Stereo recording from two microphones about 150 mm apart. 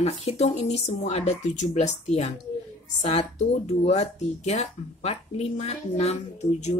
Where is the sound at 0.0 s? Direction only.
45° left (ahead or behind).